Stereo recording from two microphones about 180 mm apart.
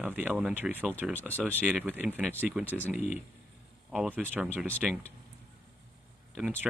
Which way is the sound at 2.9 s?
40° left (ahead or behind).